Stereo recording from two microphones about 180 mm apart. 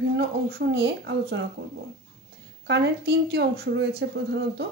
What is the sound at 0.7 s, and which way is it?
Speech, 70° right (ahead or behind).